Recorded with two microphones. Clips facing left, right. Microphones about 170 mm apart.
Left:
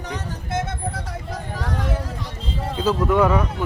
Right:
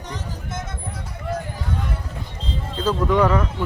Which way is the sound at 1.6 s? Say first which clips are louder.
Left 3 dB; 90° left.